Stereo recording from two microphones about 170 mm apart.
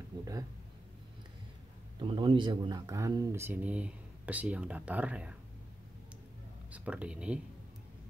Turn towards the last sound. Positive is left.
turn(degrees=-5)  # may be behind; listen again after turning